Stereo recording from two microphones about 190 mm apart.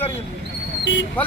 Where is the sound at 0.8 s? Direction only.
75° left (ahead or behind).